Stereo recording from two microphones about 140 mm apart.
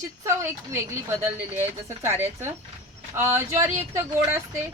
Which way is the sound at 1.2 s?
15° right (ahead or behind).